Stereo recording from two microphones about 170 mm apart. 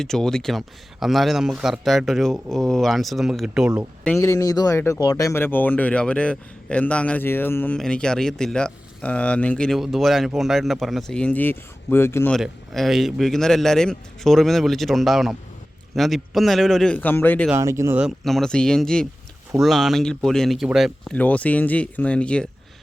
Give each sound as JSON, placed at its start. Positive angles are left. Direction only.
{"t": 0.0, "sound": "speech", "side_deg": 5}
{"t": 4.2, "sound": "speech", "side_deg": 15}
{"t": 12.3, "sound": "speech", "side_deg": 0}
{"t": 17.5, "sound": "speech", "side_deg": -15}
{"t": 18.0, "sound": "speech", "side_deg": 0}
{"t": 21.2, "sound": "speech", "side_deg": 10}